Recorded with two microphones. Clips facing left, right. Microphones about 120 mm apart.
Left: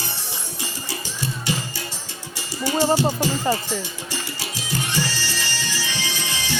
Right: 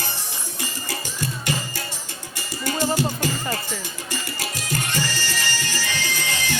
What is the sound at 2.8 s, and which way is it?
Speech, 30° left (ahead or behind).